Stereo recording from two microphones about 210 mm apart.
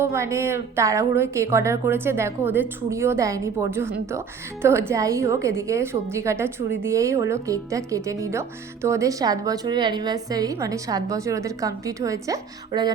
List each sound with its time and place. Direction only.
0.0 s speech: 15° right (ahead or behind)